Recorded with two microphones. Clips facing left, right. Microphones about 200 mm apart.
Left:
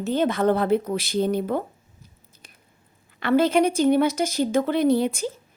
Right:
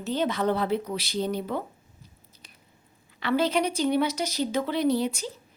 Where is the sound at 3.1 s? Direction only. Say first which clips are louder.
Left 6 dB; 50° left (ahead or behind).